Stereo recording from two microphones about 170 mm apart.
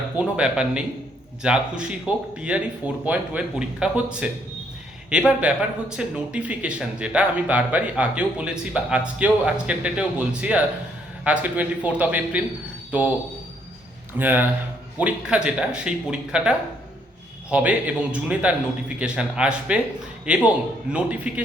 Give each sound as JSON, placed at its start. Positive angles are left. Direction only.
{"t": 0.2, "sound": "speech", "side_deg": -5}
{"t": 5.5, "sound": "speech", "side_deg": -5}
{"t": 14.2, "sound": "speech", "side_deg": -10}